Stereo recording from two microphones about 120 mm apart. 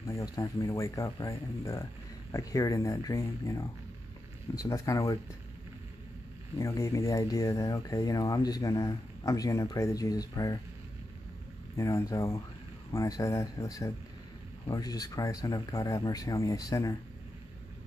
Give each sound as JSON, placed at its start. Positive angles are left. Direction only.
{"t": 0.0, "sound": "speech", "side_deg": 25}
{"t": 6.6, "sound": "speech", "side_deg": 25}
{"t": 11.7, "sound": "speech", "side_deg": 30}